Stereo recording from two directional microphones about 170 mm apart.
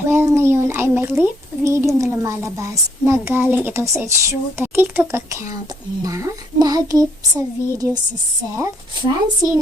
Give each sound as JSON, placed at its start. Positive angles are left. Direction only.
{"t": 0.1, "sound": "a sound", "side_deg": -15}
{"t": 3.1, "sound": "a woman's voice", "side_deg": -15}
{"t": 6.0, "sound": "child singing", "side_deg": -20}